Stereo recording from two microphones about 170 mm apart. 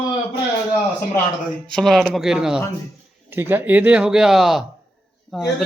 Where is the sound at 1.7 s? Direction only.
Centre (ahead or behind).